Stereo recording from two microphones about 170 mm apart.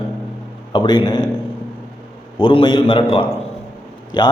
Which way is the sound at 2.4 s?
30° left (ahead or behind).